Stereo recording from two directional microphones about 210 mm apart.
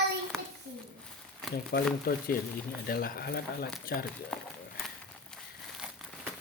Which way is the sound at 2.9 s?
45° left (ahead or behind).